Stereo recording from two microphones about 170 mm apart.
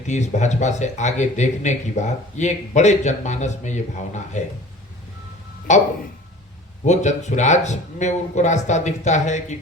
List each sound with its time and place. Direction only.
0.1 s speech: 45° left (ahead or behind)
5.7 s speech: 45° left (ahead or behind)